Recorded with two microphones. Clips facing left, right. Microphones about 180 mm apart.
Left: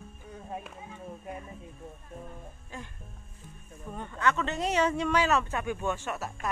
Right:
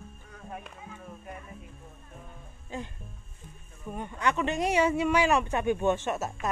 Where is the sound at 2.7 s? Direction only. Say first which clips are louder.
Right 6 dB; 20° right (ahead or behind).